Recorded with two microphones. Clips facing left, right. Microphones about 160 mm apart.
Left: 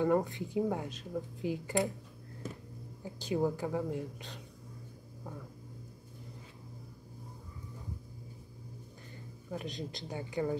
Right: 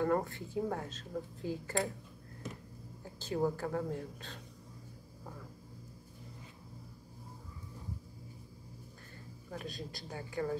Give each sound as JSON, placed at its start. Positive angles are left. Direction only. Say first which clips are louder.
{"t": 0.0, "sound": "speech", "louder": "left 3 dB", "side_deg": 15}
{"t": 3.0, "sound": "speech", "louder": "left 2 dB", "side_deg": 15}
{"t": 9.5, "sound": "a woman's voice", "louder": "left 4 dB", "side_deg": 20}